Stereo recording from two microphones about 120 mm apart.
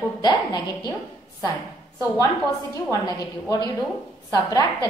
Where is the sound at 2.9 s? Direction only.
30° left (ahead or behind).